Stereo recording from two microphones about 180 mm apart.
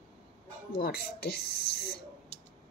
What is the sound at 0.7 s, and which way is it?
Child singing, 55° left (ahead or behind).